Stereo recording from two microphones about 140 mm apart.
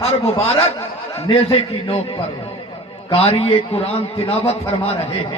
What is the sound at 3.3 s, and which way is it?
A man's voice, 45° left (ahead or behind).